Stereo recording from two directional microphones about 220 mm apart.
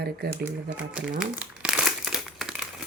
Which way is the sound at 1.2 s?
5° right (ahead or behind).